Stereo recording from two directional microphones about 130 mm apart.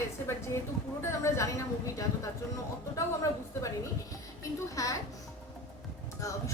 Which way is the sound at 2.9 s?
25° left (ahead or behind).